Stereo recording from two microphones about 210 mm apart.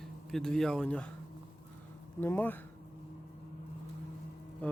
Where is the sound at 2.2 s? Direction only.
10° left (ahead or behind).